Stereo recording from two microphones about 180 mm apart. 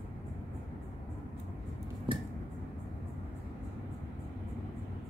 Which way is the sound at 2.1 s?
30° right (ahead or behind).